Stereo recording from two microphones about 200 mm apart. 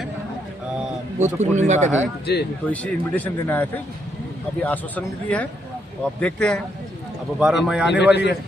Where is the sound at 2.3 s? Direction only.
55° left (ahead or behind).